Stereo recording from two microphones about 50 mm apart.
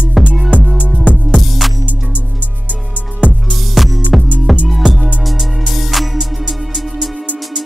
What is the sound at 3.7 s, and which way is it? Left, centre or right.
Music, centre.